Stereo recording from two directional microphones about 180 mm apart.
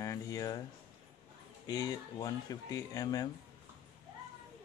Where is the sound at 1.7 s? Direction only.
20° left (ahead or behind).